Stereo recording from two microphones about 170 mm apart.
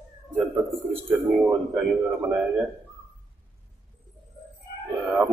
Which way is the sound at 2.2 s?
10° right (ahead or behind).